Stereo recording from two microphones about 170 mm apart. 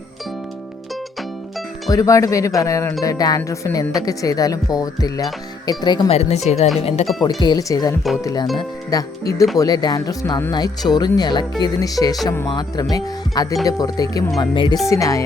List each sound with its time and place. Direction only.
1.9 s speech: 20° left (ahead or behind)
6.1 s speech: 40° left (ahead or behind)
7.3 s speech: 25° left (ahead or behind)